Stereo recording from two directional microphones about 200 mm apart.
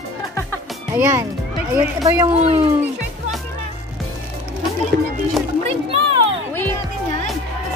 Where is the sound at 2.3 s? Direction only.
30° right (ahead or behind).